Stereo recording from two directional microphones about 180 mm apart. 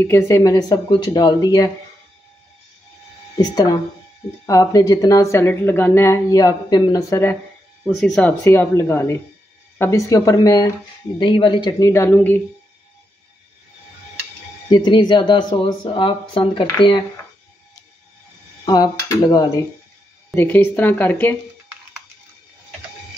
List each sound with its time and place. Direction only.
0.0 s speech: 15° left (ahead or behind)
3.3 s a woman's voice: 20° left (ahead or behind)
8.0 s a woman's voice: 5° left (ahead or behind); by 11.9 s 25° left (ahead or behind)
11.9 s a woman's voice: 15° left (ahead or behind)
14.9 s speech: 25° left (ahead or behind)
18.7 s speech: 20° left (ahead or behind)
20.3 s a woman's voice: 10° left (ahead or behind)